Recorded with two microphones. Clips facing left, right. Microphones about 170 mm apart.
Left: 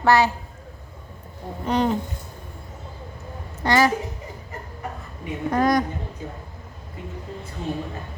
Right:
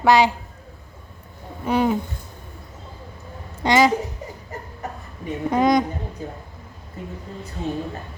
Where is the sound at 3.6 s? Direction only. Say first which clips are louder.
Right 2 dB; 15° right (ahead or behind).